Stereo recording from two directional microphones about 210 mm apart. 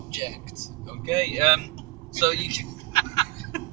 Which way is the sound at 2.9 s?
20° left (ahead or behind).